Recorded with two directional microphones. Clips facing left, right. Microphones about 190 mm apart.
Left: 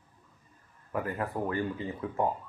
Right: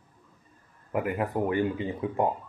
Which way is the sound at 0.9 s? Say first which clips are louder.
Right 5 dB; 15° right (ahead or behind).